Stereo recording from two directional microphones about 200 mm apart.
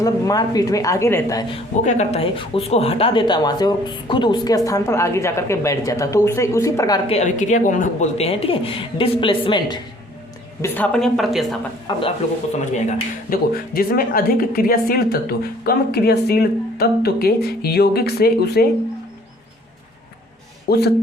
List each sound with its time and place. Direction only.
0.0 s a woman's voice: 20° left (ahead or behind)
1.5 s speech: 35° left (ahead or behind); by 7.0 s 15° left (ahead or behind)
7.1 s speech: 35° left (ahead or behind)
10.6 s a woman's voice: 5° left (ahead or behind)
11.9 s speech: 20° left (ahead or behind)
13.3 s a woman's voice: 45° left (ahead or behind)
20.7 s a woman's voice: 55° left (ahead or behind)